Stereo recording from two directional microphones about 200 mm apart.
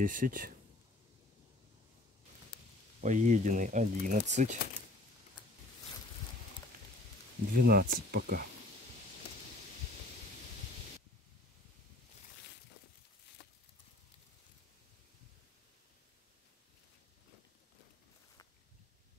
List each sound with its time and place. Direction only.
0.0 s speech: 45° right (ahead or behind)
3.0 s speech: 40° right (ahead or behind)
7.5 s speech: 50° right (ahead or behind)